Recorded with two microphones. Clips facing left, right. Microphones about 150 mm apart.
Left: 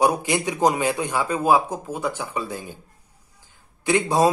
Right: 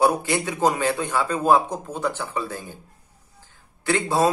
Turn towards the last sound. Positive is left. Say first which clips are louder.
# left 2 dB
turn(degrees=20)  # may be behind; listen again after turning